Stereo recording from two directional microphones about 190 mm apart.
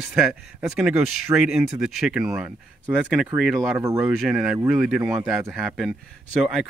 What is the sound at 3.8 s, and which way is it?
Speech, 15° right (ahead or behind).